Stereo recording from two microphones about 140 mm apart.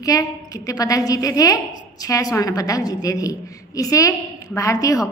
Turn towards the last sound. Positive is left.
turn(degrees=25)  # may be behind; listen again after turning